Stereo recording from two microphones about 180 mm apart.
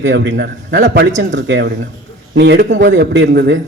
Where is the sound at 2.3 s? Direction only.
75° right (ahead or behind).